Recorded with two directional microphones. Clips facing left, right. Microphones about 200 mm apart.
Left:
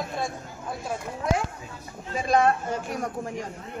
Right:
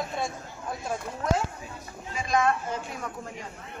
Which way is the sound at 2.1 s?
35° left (ahead or behind).